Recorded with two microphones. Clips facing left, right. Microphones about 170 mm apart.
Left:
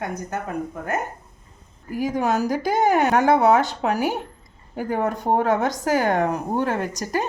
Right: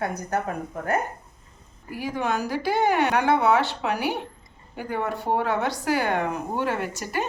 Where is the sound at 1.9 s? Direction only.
45° left (ahead or behind).